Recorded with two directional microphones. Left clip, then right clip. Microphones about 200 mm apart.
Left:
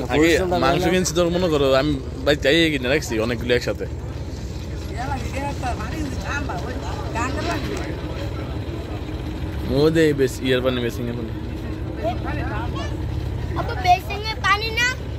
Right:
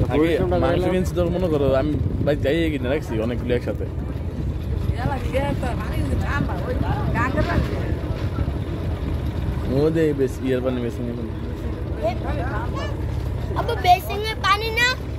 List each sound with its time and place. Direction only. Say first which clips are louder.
0.1 s speech: left 3 dB; 15° left (ahead or behind)
9.8 s speech: left 3 dB; 15° left (ahead or behind)
13.6 s vehicle: right 1 dB; 35° right (ahead or behind)